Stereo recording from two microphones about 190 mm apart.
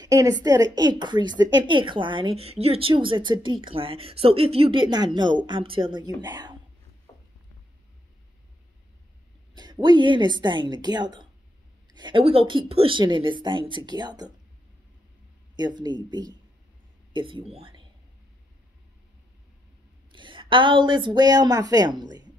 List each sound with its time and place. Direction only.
0.0 s speech: 20° right (ahead or behind)
9.6 s speech: 25° right (ahead or behind)
15.5 s speech: 20° right (ahead or behind)
20.1 s a woman's voice: 25° right (ahead or behind)